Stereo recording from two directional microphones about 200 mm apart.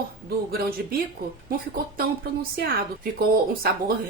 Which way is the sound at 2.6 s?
45° right (ahead or behind).